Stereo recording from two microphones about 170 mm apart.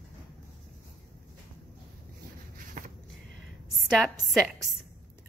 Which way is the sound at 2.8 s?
50° right (ahead or behind).